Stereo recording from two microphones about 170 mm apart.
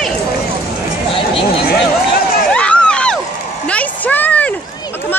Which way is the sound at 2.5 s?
5° left (ahead or behind).